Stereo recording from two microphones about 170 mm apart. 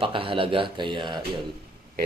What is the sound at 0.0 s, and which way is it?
A man's voice, 30° right (ahead or behind).